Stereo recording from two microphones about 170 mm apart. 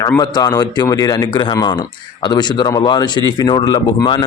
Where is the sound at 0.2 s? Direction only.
25° left (ahead or behind).